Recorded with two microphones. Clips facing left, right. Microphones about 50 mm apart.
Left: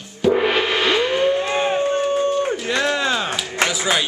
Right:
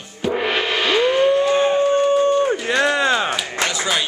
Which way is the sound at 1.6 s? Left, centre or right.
Centre.